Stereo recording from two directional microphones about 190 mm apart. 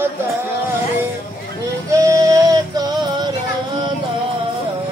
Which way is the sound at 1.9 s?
20° right (ahead or behind).